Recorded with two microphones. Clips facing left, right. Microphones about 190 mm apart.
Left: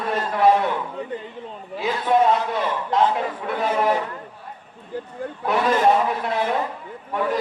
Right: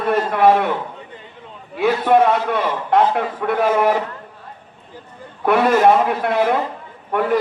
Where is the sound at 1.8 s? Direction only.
65° right (ahead or behind).